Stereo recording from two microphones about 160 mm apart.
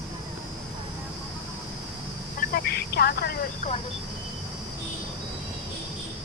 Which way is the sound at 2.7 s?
75° left (ahead or behind).